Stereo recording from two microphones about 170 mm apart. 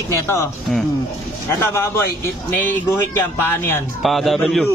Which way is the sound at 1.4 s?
15° left (ahead or behind).